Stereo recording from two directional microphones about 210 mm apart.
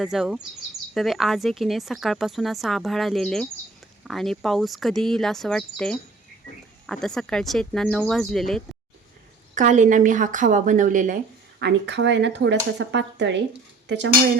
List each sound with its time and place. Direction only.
0.0 s a woman's voice: centre (ahead or behind)
9.6 s a woman's voice: 35° right (ahead or behind)
11.6 s speech: 55° right (ahead or behind)